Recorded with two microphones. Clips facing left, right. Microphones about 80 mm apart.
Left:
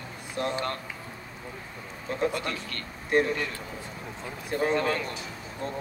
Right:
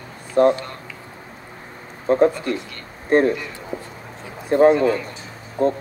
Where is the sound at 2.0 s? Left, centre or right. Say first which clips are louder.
Right 12 dB; right.